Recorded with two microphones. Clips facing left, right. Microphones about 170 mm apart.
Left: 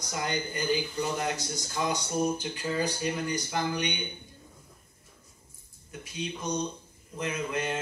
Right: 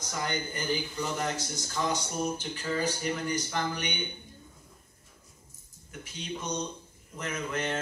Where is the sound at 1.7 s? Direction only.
15° left (ahead or behind).